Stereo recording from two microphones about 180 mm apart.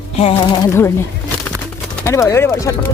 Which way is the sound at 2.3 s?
15° left (ahead or behind).